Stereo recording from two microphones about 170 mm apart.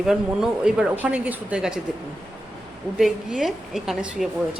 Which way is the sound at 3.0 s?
Centre (ahead or behind).